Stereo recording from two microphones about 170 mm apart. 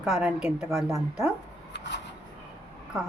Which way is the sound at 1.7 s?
90° left.